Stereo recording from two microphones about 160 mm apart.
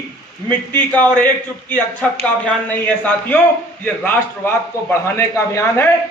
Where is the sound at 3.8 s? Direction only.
15° left (ahead or behind).